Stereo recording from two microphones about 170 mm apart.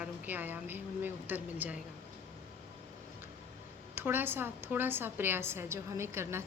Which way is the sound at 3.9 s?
10° right (ahead or behind).